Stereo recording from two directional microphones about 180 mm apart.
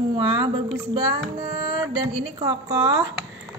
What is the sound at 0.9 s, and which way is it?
Speech, 20° right (ahead or behind).